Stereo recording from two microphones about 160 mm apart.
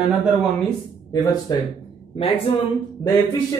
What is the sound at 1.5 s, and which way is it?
Speech, 25° left (ahead or behind).